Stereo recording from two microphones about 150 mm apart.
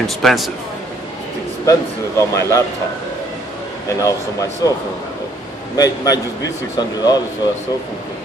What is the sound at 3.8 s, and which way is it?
Speech, 20° left (ahead or behind).